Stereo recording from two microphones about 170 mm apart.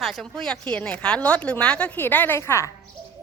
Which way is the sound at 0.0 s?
Centre (ahead or behind).